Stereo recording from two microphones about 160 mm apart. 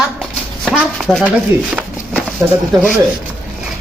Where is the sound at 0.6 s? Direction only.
5° right (ahead or behind).